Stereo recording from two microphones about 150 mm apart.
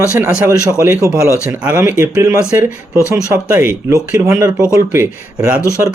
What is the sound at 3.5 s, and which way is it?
Speech, 15° right (ahead or behind).